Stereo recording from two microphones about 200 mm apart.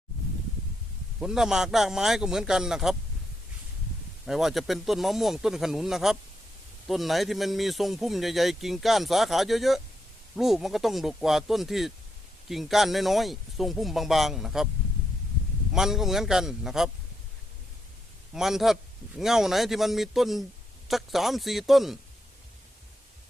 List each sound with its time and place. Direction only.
1.2 s speech: 5° right (ahead or behind)
4.3 s speech: centre (ahead or behind)
15.7 s speech: centre (ahead or behind)
18.3 s speech: centre (ahead or behind)